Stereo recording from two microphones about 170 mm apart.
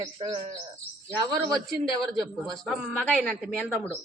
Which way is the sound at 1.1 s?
10° right (ahead or behind).